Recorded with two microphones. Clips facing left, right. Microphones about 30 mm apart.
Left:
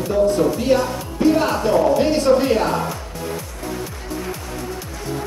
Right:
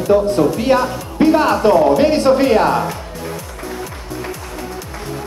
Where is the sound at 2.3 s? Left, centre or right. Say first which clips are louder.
Right 4 dB; right.